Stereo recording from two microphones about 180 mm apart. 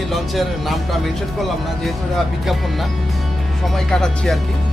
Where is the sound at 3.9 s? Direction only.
Centre (ahead or behind).